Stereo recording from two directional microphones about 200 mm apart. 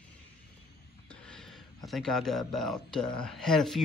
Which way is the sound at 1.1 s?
5° left (ahead or behind).